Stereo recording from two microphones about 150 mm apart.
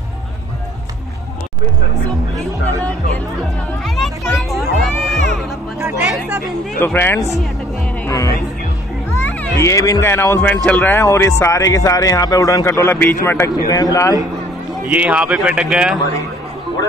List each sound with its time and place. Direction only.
3.8 s children playing: centre (ahead or behind)
5.8 s chatter: 15° right (ahead or behind)
6.8 s speech: 15° left (ahead or behind)
9.2 s speech: 15° left (ahead or behind)
14.9 s speech: 10° right (ahead or behind)